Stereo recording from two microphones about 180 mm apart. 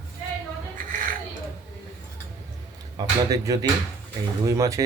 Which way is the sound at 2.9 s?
20° right (ahead or behind).